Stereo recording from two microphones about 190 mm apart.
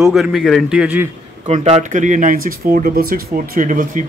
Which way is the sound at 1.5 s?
35° right (ahead or behind).